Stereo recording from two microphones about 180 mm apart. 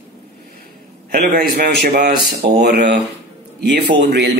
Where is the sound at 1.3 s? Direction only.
45° right (ahead or behind).